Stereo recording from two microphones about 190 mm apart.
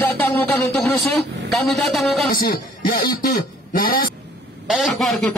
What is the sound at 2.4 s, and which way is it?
Speech, 50° left (ahead or behind).